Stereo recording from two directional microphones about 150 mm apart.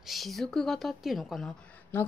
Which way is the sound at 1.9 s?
15° left (ahead or behind).